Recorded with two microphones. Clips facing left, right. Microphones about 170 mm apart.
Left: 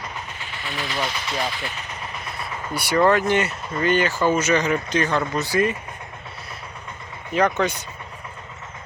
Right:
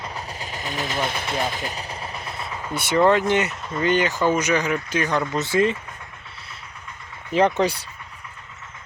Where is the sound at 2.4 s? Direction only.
25° right (ahead or behind).